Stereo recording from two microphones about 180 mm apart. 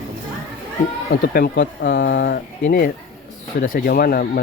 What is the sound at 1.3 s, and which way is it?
Speech, 60° left (ahead or behind).